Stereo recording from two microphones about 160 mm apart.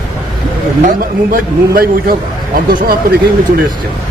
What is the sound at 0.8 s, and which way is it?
A man's voice, 60° right (ahead or behind).